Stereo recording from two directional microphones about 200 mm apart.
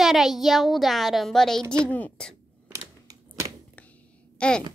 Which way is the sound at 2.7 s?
15° right (ahead or behind).